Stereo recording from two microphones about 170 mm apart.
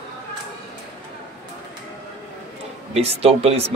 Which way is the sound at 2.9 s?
35° right (ahead or behind).